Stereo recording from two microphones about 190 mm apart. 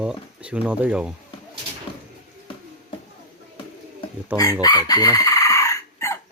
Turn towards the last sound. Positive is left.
turn(degrees=15)  # may be behind; listen again after turning